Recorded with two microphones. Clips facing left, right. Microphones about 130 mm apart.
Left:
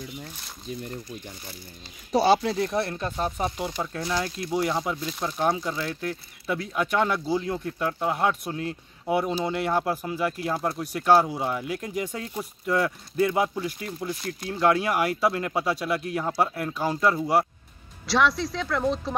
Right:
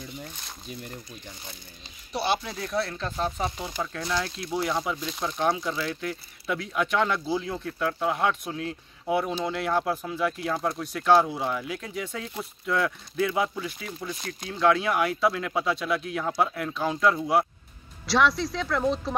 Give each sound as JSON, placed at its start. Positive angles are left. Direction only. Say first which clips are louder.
{"t": 2.1, "sound": "speech", "louder": "left 7 dB", "side_deg": 40}
{"t": 2.5, "sound": "speech", "louder": "left 3 dB", "side_deg": 25}
{"t": 3.0, "sound": "speech", "louder": "left 1 dB", "side_deg": 10}
{"t": 7.2, "sound": "speech", "louder": "left 2 dB", "side_deg": -5}
{"t": 7.5, "sound": "speech", "louder": "left 1 dB", "side_deg": 10}